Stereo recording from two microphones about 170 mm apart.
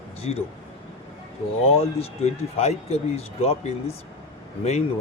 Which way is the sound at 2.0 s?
40° left (ahead or behind).